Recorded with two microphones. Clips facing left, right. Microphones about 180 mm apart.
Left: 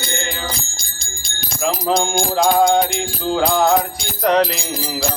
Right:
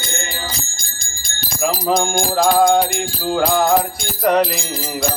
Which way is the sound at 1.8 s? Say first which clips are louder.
Even; centre (ahead or behind).